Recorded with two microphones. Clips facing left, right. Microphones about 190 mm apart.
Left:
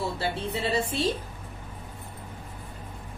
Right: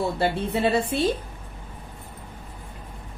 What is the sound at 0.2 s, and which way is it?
Speech, 55° right (ahead or behind).